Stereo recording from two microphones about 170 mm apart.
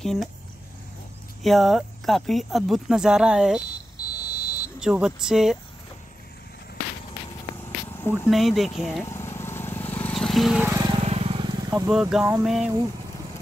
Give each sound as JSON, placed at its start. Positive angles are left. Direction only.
{"t": 0.0, "sound": "speech", "side_deg": 0}
{"t": 1.4, "sound": "speech", "side_deg": 0}
{"t": 4.0, "sound": "car alarm", "side_deg": 20}
{"t": 4.7, "sound": "speech", "side_deg": -5}
{"t": 8.3, "sound": "speech", "side_deg": 0}
{"t": 9.0, "sound": "vehicle", "side_deg": 15}
{"t": 10.7, "sound": "vehicle", "side_deg": -20}
{"t": 11.0, "sound": "vehicle", "side_deg": -35}
{"t": 11.9, "sound": "speech", "side_deg": -5}